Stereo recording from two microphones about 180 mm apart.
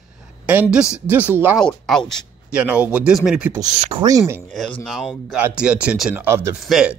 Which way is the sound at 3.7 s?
35° right (ahead or behind).